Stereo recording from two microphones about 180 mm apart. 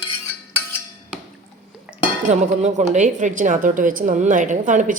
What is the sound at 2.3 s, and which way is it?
A woman's voice, 40° right (ahead or behind).